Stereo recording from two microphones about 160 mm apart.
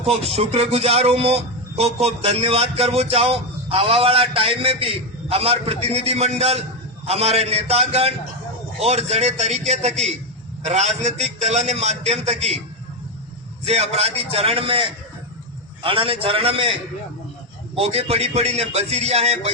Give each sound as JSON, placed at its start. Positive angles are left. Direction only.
{"t": 0.0, "sound": "a man's voice", "side_deg": -40}
{"t": 13.7, "sound": "a man's voice", "side_deg": -40}
{"t": 17.7, "sound": "a man's voice", "side_deg": -40}